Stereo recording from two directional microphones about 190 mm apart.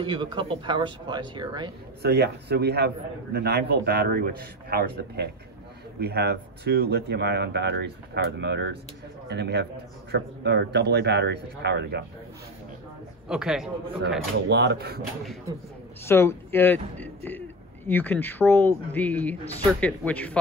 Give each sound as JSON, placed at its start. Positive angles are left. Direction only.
{"t": 0.0, "sound": "speech", "side_deg": -25}
{"t": 2.0, "sound": "speech", "side_deg": -60}
{"t": 13.3, "sound": "a man's voice", "side_deg": 0}
{"t": 14.5, "sound": "speech", "side_deg": -60}
{"t": 16.1, "sound": "speech", "side_deg": 15}